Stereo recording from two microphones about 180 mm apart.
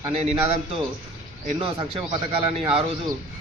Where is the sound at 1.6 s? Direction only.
30° right (ahead or behind).